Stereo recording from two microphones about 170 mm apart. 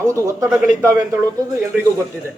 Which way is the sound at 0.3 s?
20° right (ahead or behind).